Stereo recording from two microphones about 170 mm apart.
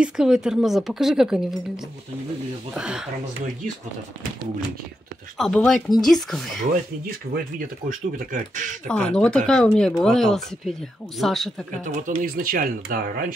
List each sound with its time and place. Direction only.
0.0 s speech: 5° right (ahead or behind)
2.7 s speech: 5° right (ahead or behind)
5.4 s speech: 5° left (ahead or behind)
7.9 s speech: 50° right (ahead or behind)
8.8 s speech: 5° left (ahead or behind)
11.8 s speech: 50° right (ahead or behind)